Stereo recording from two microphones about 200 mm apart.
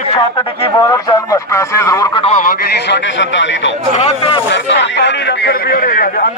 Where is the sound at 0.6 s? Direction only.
20° left (ahead or behind).